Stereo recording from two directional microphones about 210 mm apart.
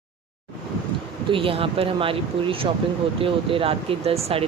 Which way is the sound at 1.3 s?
25° right (ahead or behind).